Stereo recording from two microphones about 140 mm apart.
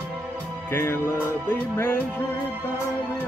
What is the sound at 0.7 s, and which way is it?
Music, 20° left (ahead or behind).